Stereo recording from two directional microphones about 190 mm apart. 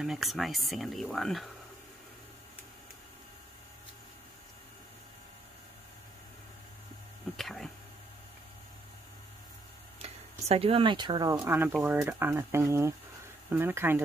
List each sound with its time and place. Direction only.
0.0 s speech: centre (ahead or behind)
7.3 s speech: centre (ahead or behind)
10.0 s speech: 30° right (ahead or behind)
11.3 s speech: 10° right (ahead or behind)